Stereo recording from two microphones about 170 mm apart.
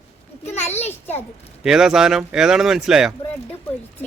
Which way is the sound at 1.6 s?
5° right (ahead or behind).